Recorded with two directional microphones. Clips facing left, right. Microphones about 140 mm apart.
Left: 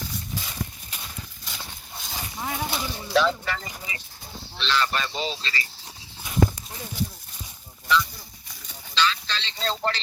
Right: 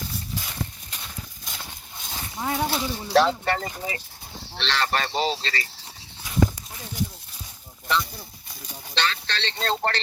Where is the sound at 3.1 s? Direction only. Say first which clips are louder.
Right 3 dB; 65° right (ahead or behind).